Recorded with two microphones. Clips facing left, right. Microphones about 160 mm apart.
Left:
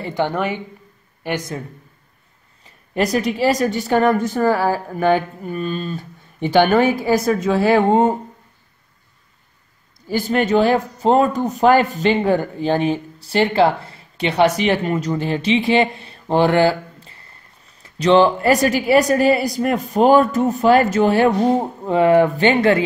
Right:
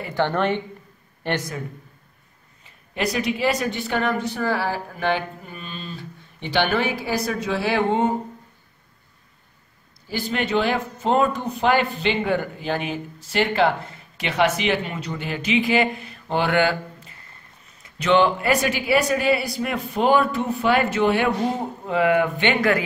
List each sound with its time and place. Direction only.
0.1 s a woman's voice: 10° left (ahead or behind)
2.6 s a woman's voice: 40° left (ahead or behind)
10.0 s speech: 45° left (ahead or behind)